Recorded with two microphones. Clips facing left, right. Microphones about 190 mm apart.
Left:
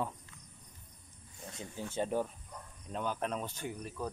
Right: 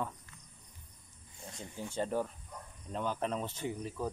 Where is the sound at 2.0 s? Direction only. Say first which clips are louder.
Even; 5° left (ahead or behind).